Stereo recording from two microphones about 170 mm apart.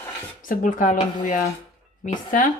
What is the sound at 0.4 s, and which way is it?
Speech, 50° left (ahead or behind).